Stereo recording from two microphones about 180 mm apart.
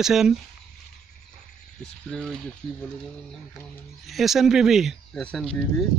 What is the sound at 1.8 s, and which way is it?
Speech, 5° left (ahead or behind).